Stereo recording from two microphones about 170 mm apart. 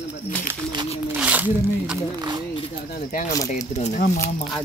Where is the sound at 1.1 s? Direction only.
10° right (ahead or behind).